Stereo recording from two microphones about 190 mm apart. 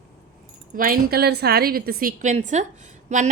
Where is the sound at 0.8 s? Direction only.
50° right (ahead or behind).